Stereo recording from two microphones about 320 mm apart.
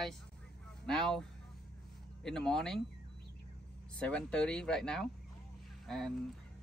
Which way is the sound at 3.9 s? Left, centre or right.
Centre.